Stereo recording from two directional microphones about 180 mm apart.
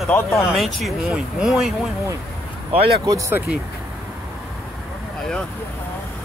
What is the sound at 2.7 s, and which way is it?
Speech, 30° right (ahead or behind).